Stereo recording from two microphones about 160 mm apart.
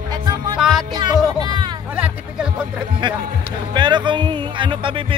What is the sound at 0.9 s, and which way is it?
Music, 25° right (ahead or behind).